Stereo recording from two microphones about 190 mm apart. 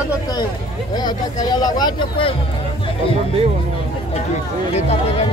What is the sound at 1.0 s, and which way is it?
Speech, 20° left (ahead or behind).